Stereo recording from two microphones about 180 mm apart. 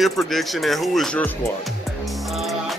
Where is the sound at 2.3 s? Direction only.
Centre (ahead or behind).